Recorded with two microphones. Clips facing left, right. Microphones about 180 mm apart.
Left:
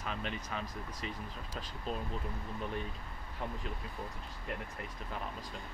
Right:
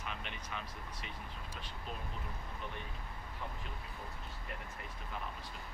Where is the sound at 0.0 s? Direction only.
35° left (ahead or behind).